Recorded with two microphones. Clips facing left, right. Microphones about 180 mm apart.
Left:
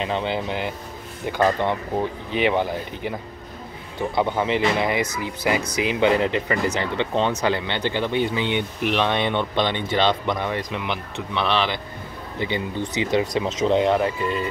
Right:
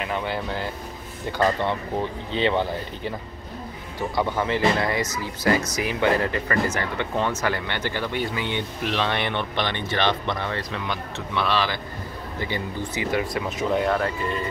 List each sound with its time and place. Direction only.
0.0 s speech: 20° left (ahead or behind)